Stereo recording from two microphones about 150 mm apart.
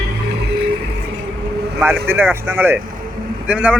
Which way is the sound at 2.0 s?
15° right (ahead or behind).